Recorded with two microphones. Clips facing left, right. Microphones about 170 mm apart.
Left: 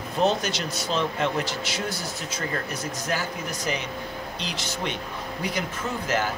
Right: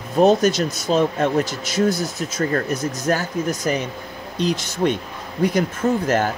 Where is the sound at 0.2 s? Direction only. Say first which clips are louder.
Right 9 dB; 45° right (ahead or behind).